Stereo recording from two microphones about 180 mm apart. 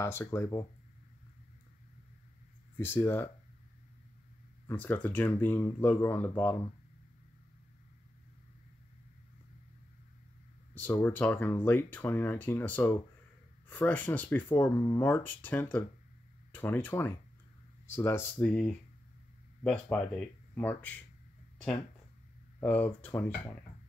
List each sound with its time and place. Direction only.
0.0 s speech: 15° left (ahead or behind)
2.8 s speech: 10° left (ahead or behind)
4.6 s speech: 10° left (ahead or behind)
10.7 s speech: 10° left (ahead or behind)
22.6 s speech: 10° left (ahead or behind)